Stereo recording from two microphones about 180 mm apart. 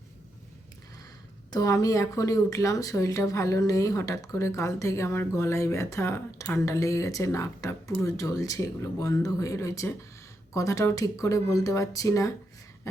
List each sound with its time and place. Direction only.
1.5 s speech: 20° left (ahead or behind)